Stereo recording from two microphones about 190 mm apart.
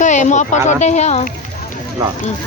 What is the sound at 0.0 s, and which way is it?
Speech, 40° left (ahead or behind).